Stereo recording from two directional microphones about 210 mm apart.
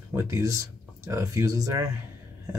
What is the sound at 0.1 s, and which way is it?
Speech, 15° right (ahead or behind).